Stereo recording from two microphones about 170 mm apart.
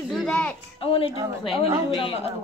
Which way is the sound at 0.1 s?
5° left (ahead or behind).